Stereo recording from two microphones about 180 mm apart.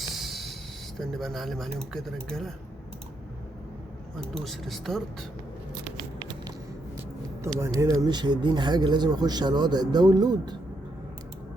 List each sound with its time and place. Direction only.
0.1 s a sound: centre (ahead or behind)
0.9 s speech: centre (ahead or behind)
4.4 s speech: centre (ahead or behind)
7.4 s speech: 15° right (ahead or behind)